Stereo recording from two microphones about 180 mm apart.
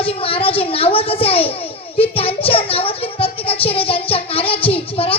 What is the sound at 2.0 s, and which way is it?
Child singing, 30° left (ahead or behind).